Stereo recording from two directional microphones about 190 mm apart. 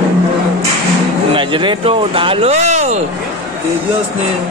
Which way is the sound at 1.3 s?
25° right (ahead or behind).